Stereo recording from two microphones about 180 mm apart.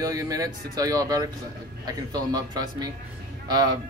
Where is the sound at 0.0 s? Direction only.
20° right (ahead or behind).